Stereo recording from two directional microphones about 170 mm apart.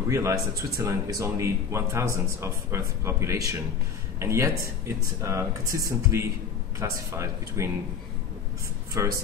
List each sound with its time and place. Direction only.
0.1 s speech: 15° right (ahead or behind)
9.0 s speech: 20° right (ahead or behind)